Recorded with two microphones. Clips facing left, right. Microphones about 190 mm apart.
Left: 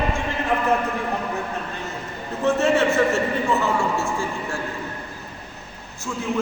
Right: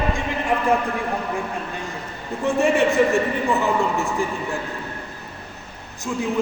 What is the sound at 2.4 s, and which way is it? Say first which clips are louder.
A man's voice: even; 15° right (ahead or behind).